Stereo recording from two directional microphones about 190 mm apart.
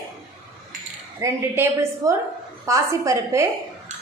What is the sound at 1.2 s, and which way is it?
A woman's voice, 15° right (ahead or behind).